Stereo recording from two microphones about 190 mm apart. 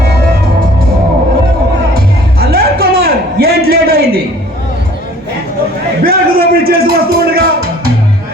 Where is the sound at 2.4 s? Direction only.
55° right (ahead or behind).